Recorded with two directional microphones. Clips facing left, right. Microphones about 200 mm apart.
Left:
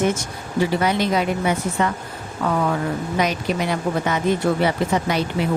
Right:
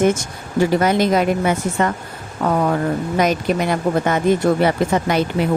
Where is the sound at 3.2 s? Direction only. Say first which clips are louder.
Right 4 dB; 50° right (ahead or behind).